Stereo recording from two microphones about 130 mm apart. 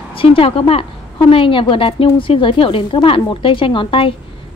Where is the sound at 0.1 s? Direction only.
45° left (ahead or behind).